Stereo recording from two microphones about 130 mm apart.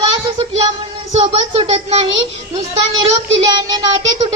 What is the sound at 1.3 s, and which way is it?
Speech, 50° right (ahead or behind).